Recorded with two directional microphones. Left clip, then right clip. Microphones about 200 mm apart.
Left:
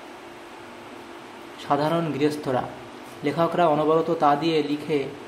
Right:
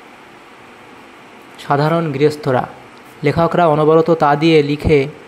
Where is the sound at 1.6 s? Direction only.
30° right (ahead or behind).